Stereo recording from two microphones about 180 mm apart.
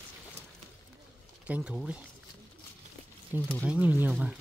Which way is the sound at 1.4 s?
5° right (ahead or behind).